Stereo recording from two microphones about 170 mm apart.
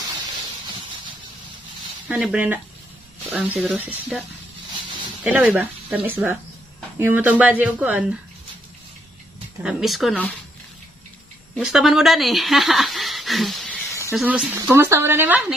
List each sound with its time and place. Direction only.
2.0 s speech: 5° right (ahead or behind)
3.6 s speech: 10° right (ahead or behind)
5.2 s speech: 10° right (ahead or behind)
9.6 s speech: 5° right (ahead or behind)
11.5 s speech: centre (ahead or behind)